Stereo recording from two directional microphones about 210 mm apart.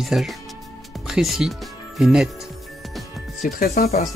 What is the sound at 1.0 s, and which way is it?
Music, centre (ahead or behind).